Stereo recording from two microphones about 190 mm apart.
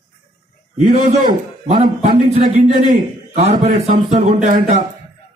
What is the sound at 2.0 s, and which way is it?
A man's voice, 40° right (ahead or behind).